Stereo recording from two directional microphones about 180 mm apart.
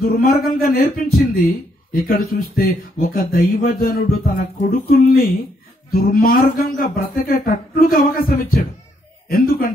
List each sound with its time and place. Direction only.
0.0 s speech: 50° left (ahead or behind)